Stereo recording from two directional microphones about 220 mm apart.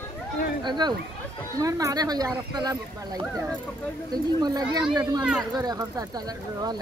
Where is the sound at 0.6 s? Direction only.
20° right (ahead or behind).